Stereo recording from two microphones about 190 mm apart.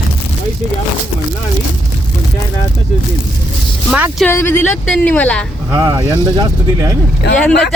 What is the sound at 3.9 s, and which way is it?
Speech, 5° right (ahead or behind).